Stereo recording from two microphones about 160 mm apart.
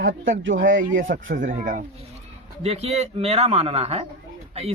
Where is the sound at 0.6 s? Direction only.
60° right (ahead or behind).